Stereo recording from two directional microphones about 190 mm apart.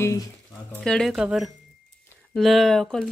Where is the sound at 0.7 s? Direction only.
5° left (ahead or behind).